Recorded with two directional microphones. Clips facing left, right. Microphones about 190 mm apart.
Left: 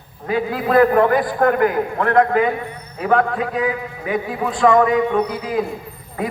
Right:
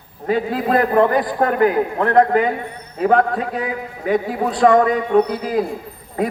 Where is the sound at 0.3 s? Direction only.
30° right (ahead or behind).